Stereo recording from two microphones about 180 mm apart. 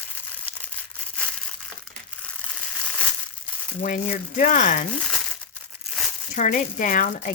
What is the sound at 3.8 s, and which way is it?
Speech, 45° left (ahead or behind).